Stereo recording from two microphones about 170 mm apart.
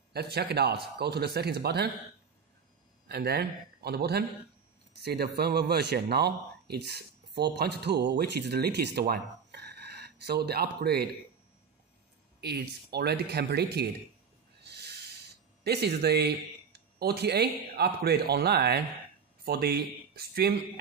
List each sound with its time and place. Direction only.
0.1 s a man's voice: 70° right (ahead or behind)
3.1 s a man's voice: 70° right (ahead or behind)
12.4 s a man's voice: 75° right (ahead or behind)
14.6 s a sound: 80° right
15.6 s speech: 75° right (ahead or behind)